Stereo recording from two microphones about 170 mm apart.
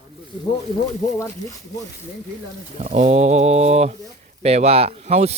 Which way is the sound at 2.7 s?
40° right (ahead or behind).